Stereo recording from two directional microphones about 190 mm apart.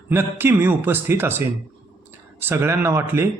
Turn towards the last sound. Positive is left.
turn(degrees=-10)  # may be behind; listen again after turning